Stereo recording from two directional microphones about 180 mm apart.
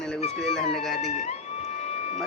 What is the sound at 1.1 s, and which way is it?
Speech, 35° left (ahead or behind).